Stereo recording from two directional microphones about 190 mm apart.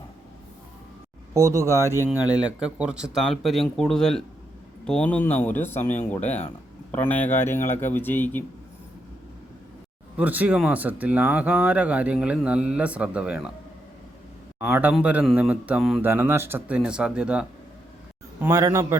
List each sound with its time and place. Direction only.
1.3 s a man's voice: 15° right (ahead or behind); by 8.4 s 10° left (ahead or behind)
10.2 s speech: 10° right (ahead or behind)
14.6 s speech: 10° right (ahead or behind)
18.3 s speech: 15° right (ahead or behind)